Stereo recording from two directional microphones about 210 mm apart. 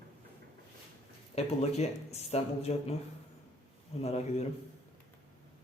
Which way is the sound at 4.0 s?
30° left (ahead or behind).